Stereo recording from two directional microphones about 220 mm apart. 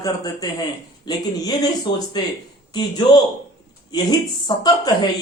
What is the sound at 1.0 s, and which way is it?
Speech, 20° left (ahead or behind).